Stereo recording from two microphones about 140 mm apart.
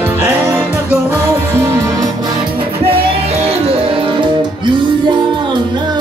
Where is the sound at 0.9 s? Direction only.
20° right (ahead or behind).